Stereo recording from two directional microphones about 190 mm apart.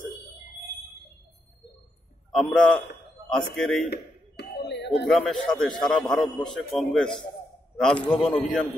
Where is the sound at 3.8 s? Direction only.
60° left (ahead or behind).